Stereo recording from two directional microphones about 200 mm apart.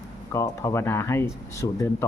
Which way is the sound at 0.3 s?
15° left (ahead or behind).